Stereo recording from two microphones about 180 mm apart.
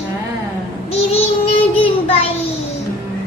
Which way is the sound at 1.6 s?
30° left (ahead or behind).